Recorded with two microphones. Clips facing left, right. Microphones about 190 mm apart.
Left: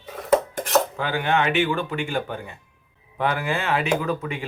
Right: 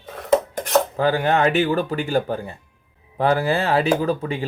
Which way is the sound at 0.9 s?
40° right (ahead or behind).